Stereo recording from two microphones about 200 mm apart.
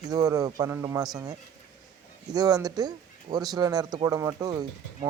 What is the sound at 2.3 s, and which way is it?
Speech, 20° right (ahead or behind).